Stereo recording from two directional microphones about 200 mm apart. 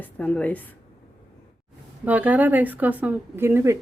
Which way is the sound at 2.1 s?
5° right (ahead or behind).